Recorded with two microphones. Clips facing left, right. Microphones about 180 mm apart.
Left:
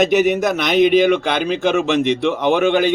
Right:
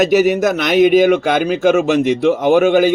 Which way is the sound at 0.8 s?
45° right (ahead or behind).